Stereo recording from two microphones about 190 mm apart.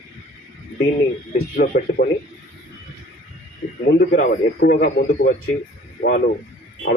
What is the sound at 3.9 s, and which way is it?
Speech, 50° left (ahead or behind).